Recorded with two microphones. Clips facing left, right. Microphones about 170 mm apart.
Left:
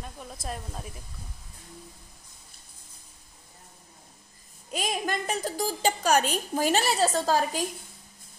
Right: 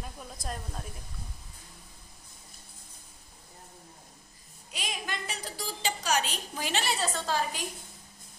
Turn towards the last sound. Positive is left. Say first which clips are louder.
# left 6 dB
turn(degrees=40)  # may be behind; listen again after turning